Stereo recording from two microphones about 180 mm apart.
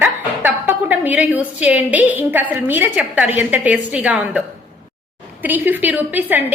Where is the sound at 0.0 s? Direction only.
10° right (ahead or behind).